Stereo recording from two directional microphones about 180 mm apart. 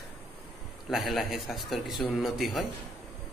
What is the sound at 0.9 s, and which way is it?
A man's voice, centre (ahead or behind).